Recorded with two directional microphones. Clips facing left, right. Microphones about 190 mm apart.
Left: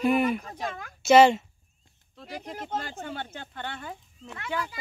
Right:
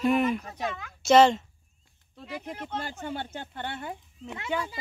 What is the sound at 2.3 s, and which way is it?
Speech, 45° left (ahead or behind).